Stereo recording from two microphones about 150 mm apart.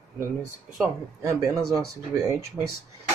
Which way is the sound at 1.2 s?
20° right (ahead or behind).